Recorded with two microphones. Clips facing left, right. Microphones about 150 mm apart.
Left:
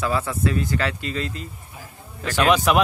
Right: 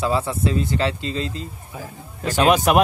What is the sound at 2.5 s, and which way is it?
Speech, 45° right (ahead or behind).